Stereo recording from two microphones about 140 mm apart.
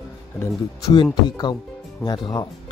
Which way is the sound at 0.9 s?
30° left (ahead or behind).